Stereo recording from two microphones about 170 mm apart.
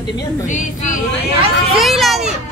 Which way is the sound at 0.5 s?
45° left (ahead or behind).